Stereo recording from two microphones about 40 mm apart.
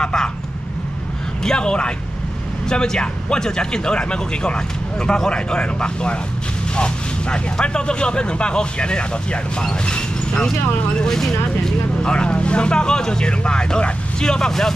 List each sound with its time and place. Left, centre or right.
0.0 s vehicle: centre
1.4 s speech: left
6.7 s vehicle: left
7.6 s speech: left
11.0 s speech: centre
12.1 s speech: left